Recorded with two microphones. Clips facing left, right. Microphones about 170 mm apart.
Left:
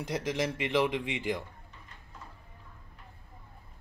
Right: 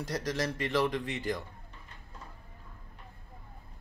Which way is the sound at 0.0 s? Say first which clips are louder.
Left 1 dB; 10° left (ahead or behind).